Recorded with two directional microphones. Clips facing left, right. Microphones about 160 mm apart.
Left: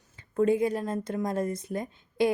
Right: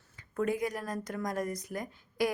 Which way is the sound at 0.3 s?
25° left (ahead or behind).